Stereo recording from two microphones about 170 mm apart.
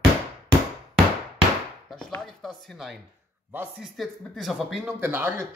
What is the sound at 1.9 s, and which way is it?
Chopping, 5° left (ahead or behind).